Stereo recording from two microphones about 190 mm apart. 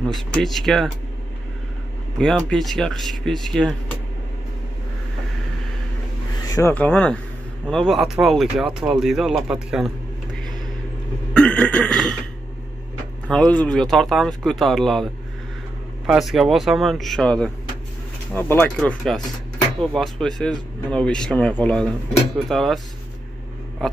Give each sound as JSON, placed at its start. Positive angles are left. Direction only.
{"t": 0.3, "sound": "speech", "side_deg": 0}
{"t": 2.1, "sound": "speech", "side_deg": 0}
{"t": 6.4, "sound": "a sound", "side_deg": 20}
{"t": 6.7, "sound": "speech", "side_deg": 10}
{"t": 11.3, "sound": "a sound", "side_deg": 5}
{"t": 13.3, "sound": "speech", "side_deg": 5}
{"t": 16.1, "sound": "speech", "side_deg": 0}